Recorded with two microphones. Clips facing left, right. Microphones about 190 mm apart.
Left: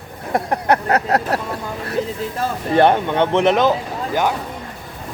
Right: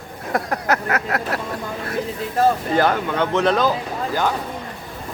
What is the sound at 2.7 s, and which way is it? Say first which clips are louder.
Speech: left 4 dB; 25° left (ahead or behind).